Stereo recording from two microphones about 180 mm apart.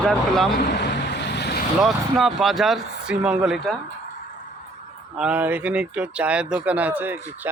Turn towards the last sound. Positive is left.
turn(degrees=-10)  # may be behind; listen again after turning